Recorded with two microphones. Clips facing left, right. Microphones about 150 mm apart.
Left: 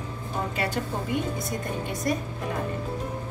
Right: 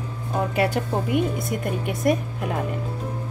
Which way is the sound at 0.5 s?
55° right (ahead or behind).